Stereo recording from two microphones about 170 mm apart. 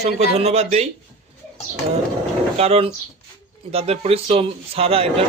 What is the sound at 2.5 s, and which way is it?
A man's voice, 35° right (ahead or behind).